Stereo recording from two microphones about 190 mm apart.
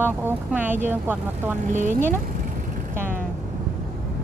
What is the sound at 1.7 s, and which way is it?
Speech, 40° right (ahead or behind).